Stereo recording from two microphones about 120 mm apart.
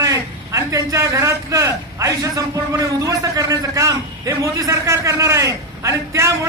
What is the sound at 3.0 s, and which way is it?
A man's voice, 30° right (ahead or behind).